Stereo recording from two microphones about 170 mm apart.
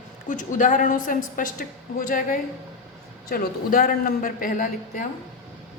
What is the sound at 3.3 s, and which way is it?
A woman's voice, 60° left (ahead or behind).